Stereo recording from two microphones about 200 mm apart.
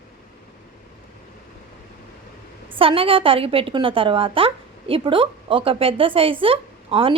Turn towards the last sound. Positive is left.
turn(degrees=-25)  # may be behind; listen again after turning